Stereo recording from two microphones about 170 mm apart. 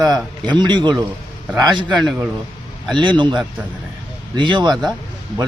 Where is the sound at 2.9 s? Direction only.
25° right (ahead or behind).